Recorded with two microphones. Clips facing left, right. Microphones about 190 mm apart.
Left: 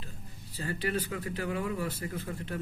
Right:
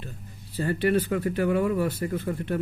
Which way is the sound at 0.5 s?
60° right (ahead or behind).